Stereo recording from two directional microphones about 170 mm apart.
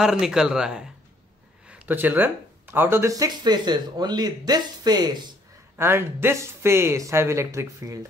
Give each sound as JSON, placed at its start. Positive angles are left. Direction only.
{"t": 0.0, "sound": "speech", "side_deg": -5}
{"t": 5.8, "sound": "speech", "side_deg": -15}